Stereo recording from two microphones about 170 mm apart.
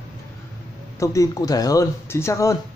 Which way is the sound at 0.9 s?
20° left (ahead or behind).